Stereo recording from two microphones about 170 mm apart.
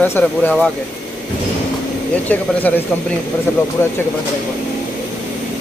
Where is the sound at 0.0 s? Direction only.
10° left (ahead or behind).